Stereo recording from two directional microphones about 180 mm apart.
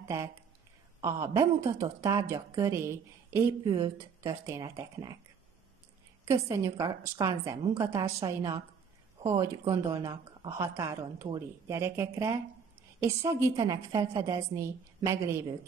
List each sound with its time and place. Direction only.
1.0 s a woman's voice: 15° right (ahead or behind)
6.2 s a woman's voice: 15° right (ahead or behind)